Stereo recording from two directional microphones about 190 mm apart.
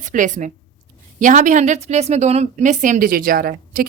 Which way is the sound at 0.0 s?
40° right (ahead or behind).